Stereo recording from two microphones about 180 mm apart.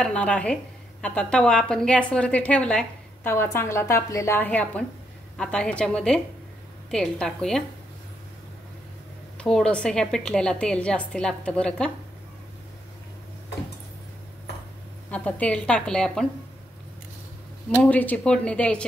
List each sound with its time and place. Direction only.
0.0 s a woman's voice: 5° left (ahead or behind)
3.3 s a woman's voice: 15° left (ahead or behind)
9.4 s a woman's voice: 5° left (ahead or behind)
15.0 s a woman's voice: 5° left (ahead or behind)
17.6 s a woman's voice: 10° left (ahead or behind)